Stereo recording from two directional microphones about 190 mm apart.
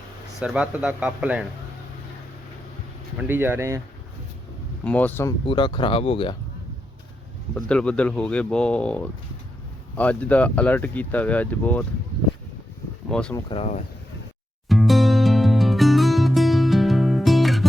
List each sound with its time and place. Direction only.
0.3 s speech: 5° right (ahead or behind)
3.2 s speech: 10° right (ahead or behind)
4.8 s speech: 5° left (ahead or behind)
5.5 s speech: 25° left (ahead or behind)
7.5 s speech: 5° left (ahead or behind)
13.1 s speech: 5° left (ahead or behind)
13.3 s speech: 25° left (ahead or behind)
14.7 s music: centre (ahead or behind)